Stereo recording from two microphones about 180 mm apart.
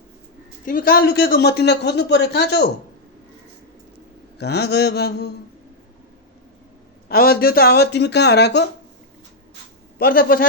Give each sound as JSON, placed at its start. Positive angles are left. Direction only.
{"t": 0.6, "sound": "speech", "side_deg": 50}
{"t": 4.4, "sound": "speech", "side_deg": 70}
{"t": 7.1, "sound": "speech", "side_deg": 55}
{"t": 10.0, "sound": "speech", "side_deg": 55}